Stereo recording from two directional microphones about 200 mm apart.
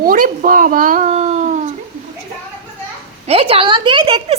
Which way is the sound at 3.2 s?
30° right (ahead or behind).